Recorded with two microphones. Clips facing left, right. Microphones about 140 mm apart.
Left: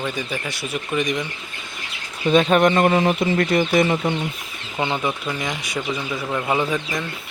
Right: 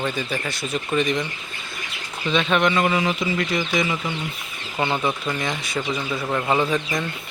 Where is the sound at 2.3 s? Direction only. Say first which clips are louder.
Left 5 dB; 45° left (ahead or behind).